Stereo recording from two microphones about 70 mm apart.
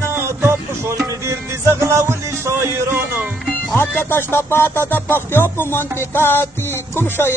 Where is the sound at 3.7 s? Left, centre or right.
Left.